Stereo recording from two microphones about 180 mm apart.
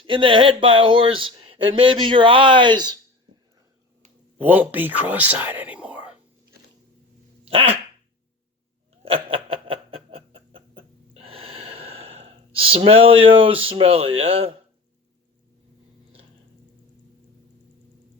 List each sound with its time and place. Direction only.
0.0 s speech: 30° right (ahead or behind)
4.4 s speech: 10° right (ahead or behind)
7.4 s dog: 30° right (ahead or behind)
9.0 s a sound: 30° right (ahead or behind)